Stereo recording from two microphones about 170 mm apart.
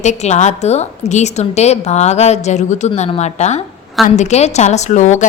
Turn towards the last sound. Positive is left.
turn(degrees=45)  # may be behind; listen again after turning